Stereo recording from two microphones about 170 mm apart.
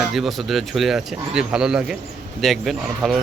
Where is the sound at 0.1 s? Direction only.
Centre (ahead or behind).